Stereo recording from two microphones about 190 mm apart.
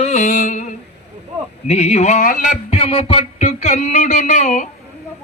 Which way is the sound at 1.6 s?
35° left (ahead or behind).